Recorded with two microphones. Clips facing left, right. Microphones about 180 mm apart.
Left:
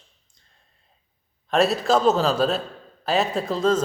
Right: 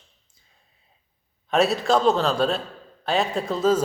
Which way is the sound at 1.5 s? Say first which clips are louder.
Even; centre (ahead or behind).